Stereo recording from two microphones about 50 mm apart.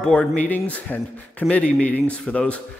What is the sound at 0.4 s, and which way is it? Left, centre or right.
A man's voice, left.